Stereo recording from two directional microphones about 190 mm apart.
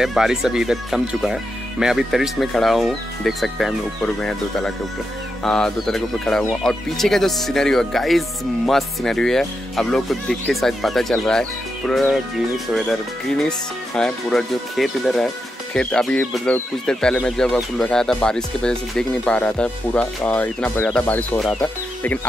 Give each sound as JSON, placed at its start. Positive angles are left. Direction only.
{"t": 0.0, "sound": "speech", "side_deg": 0}